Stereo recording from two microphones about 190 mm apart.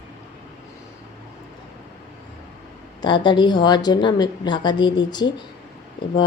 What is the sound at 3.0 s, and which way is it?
A woman's voice, 25° left (ahead or behind).